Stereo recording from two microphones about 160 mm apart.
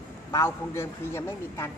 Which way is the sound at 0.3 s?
20° left (ahead or behind).